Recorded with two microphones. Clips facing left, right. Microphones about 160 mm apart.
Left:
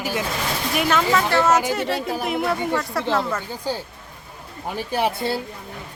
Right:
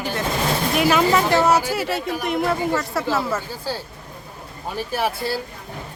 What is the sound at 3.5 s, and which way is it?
Speech, 15° left (ahead or behind).